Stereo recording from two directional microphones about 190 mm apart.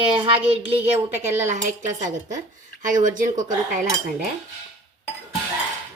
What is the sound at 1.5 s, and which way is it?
A woman's voice, 40° right (ahead or behind).